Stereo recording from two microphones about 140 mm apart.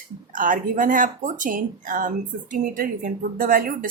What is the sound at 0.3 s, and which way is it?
Speech, 70° right (ahead or behind).